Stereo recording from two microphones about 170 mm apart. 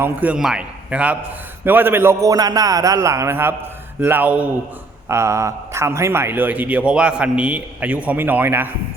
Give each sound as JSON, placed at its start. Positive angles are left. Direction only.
{"t": 0.0, "sound": "a man's voice", "side_deg": -10}